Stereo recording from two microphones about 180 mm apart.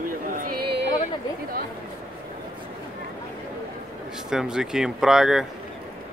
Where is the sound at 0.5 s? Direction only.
60° right (ahead or behind).